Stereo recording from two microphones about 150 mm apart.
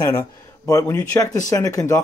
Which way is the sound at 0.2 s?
20° left (ahead or behind).